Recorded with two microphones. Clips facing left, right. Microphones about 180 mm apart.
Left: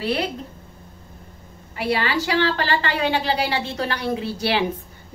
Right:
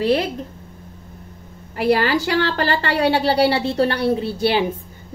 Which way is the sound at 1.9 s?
45° right (ahead or behind).